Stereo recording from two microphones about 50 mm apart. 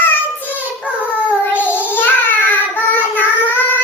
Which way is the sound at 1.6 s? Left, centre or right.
Left.